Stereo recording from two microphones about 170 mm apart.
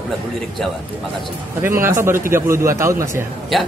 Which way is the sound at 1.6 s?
15° right (ahead or behind).